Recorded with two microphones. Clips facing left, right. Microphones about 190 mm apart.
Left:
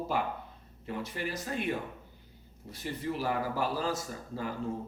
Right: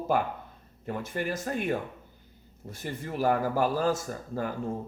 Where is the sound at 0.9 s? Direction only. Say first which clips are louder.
Right 4 dB; 50° right (ahead or behind).